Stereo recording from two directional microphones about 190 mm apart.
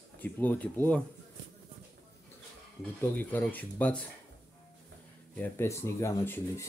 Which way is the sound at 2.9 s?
10° left (ahead or behind).